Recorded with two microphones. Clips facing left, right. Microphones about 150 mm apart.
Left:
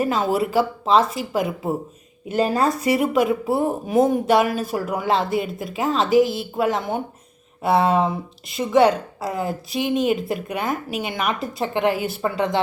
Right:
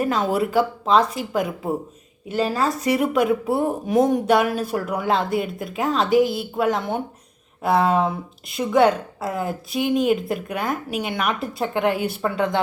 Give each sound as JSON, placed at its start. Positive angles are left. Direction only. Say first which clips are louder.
{"t": 0.0, "sound": "speech", "louder": "even", "side_deg": 5}
{"t": 2.3, "sound": "speech", "louder": "left 2 dB", "side_deg": 20}
{"t": 2.9, "sound": "speech", "louder": "right 2 dB", "side_deg": 5}